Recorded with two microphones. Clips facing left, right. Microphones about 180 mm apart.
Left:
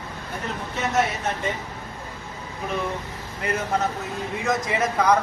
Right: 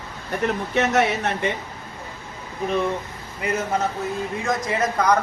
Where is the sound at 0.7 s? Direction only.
70° right (ahead or behind).